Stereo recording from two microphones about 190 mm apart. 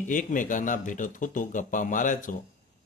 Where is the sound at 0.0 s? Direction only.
45° left (ahead or behind).